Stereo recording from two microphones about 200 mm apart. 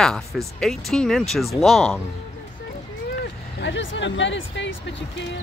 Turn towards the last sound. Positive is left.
turn(degrees=65)  # may be behind; listen again after turning